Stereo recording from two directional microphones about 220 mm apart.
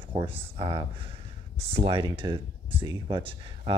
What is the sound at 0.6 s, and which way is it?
Speech, 25° right (ahead or behind).